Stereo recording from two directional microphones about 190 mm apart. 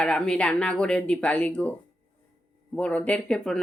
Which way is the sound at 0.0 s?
5° left (ahead or behind).